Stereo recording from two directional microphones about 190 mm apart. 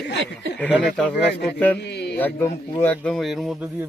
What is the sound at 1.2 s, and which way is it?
Speech, 60° left (ahead or behind).